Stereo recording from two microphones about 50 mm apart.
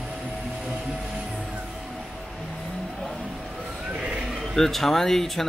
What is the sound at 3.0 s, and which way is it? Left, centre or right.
Vehicle, centre.